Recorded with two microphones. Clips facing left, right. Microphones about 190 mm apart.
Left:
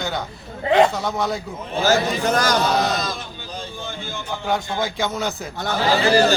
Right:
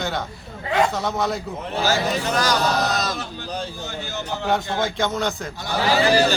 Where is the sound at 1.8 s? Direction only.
45° left (ahead or behind).